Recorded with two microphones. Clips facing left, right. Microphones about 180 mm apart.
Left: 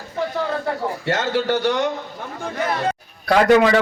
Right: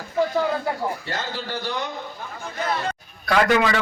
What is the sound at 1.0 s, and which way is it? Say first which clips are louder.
Speech: left 10 dB; 80° left.